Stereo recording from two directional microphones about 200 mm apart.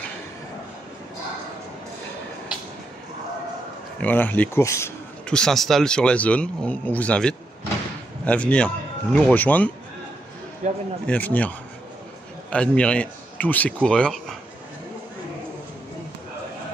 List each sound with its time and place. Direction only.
4.0 s a man's voice: 10° left (ahead or behind)
10.6 s speech: 35° right (ahead or behind)
11.1 s a man's voice: 10° left (ahead or behind)